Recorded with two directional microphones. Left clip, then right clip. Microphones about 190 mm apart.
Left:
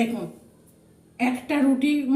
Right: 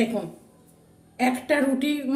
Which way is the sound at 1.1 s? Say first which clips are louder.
Right 2 dB; 50° right (ahead or behind).